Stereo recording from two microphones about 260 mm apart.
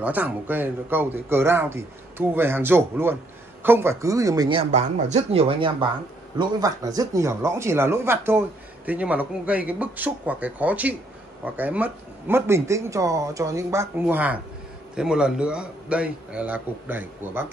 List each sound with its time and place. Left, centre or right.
0.0 s a man's voice: centre